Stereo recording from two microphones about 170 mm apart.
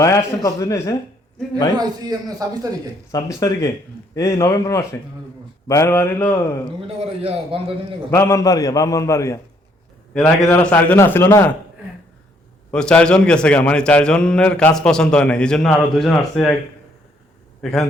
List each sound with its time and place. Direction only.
0.0 s a man's voice: 15° left (ahead or behind)
1.7 s a man's voice: 25° right (ahead or behind)
3.1 s a man's voice: 20° left (ahead or behind)
6.8 s a man's voice: 35° right (ahead or behind)
8.1 s a man's voice: 15° left (ahead or behind)
10.4 s a man's voice: 10° left (ahead or behind)
12.7 s a man's voice: 5° left (ahead or behind)
17.6 s a man's voice: centre (ahead or behind)